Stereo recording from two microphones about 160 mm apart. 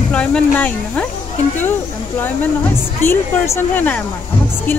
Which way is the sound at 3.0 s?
15° left (ahead or behind).